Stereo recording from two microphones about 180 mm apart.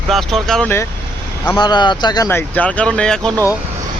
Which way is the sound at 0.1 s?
Centre (ahead or behind).